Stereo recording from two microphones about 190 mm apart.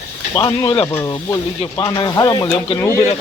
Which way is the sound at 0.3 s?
20° left (ahead or behind).